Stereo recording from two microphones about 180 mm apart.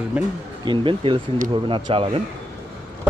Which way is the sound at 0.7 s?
25° right (ahead or behind).